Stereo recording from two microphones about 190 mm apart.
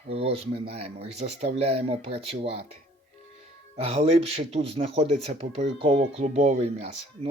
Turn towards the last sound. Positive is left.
turn(degrees=-35)  # may be behind; listen again after turning